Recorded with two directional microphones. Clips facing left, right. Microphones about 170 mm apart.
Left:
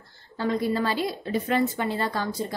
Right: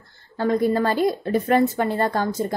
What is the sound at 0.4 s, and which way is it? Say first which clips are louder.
A woman's voice: right 5 dB; 50° right (ahead or behind).